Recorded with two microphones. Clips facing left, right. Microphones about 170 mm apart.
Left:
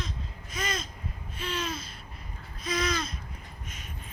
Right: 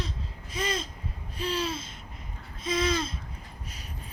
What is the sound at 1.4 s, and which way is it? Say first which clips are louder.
Babbling: right 3 dB; 35° right (ahead or behind).